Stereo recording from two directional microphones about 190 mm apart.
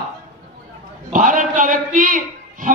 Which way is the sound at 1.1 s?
40° right (ahead or behind).